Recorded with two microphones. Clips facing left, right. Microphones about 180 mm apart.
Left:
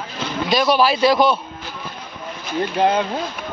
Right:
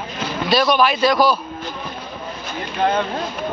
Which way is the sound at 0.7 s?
30° left (ahead or behind).